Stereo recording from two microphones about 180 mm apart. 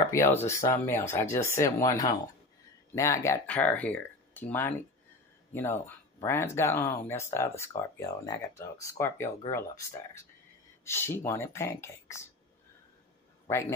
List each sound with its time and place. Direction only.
0.1 s speech: 15° left (ahead or behind)
13.5 s a man's voice: 15° left (ahead or behind)